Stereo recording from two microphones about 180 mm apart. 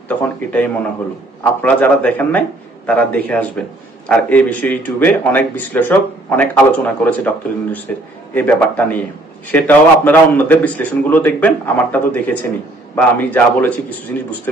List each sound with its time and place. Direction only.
0.2 s speech: 10° left (ahead or behind)